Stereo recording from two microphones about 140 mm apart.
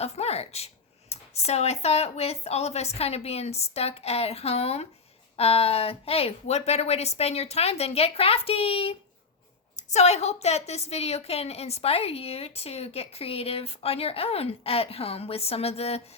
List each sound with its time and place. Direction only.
0.0 s a woman's voice: 50° left (ahead or behind)